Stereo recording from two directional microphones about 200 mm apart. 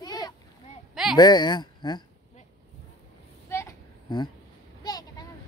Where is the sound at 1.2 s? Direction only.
20° left (ahead or behind).